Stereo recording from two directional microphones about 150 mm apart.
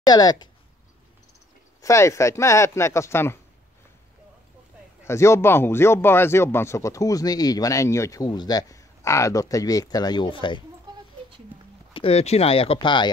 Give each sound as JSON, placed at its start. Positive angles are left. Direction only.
{"t": 0.0, "sound": "speech", "side_deg": 25}
{"t": 1.8, "sound": "speech", "side_deg": 20}
{"t": 5.0, "sound": "speech", "side_deg": 20}
{"t": 10.9, "sound": "a sound", "side_deg": -30}
{"t": 11.9, "sound": "speech", "side_deg": 40}